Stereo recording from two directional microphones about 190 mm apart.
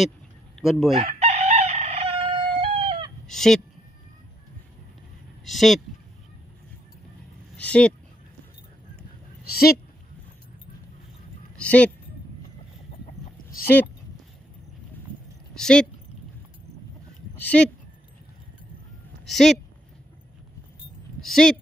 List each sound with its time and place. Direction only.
0.6 s speech: centre (ahead or behind)
0.9 s chicken: 30° right (ahead or behind)
3.3 s speech: centre (ahead or behind)
5.4 s speech: centre (ahead or behind)
7.5 s speech: 5° left (ahead or behind)
9.5 s speech: 55° left (ahead or behind)
11.5 s a woman's voice: 5° left (ahead or behind)
13.0 s chicken: 50° left (ahead or behind)
15.5 s speech: 5° left (ahead or behind)
17.4 s speech: 10° left (ahead or behind)
19.2 s speech: centre (ahead or behind)
21.2 s speech: 5° left (ahead or behind)